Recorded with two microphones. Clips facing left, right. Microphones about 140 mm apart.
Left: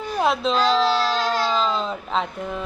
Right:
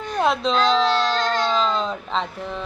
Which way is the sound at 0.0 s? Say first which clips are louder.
Even; 5° left (ahead or behind).